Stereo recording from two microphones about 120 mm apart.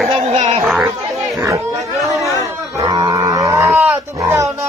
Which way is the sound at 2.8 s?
35° right (ahead or behind).